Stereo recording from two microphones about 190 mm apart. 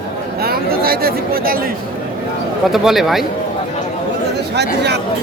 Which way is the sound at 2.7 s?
Centre (ahead or behind).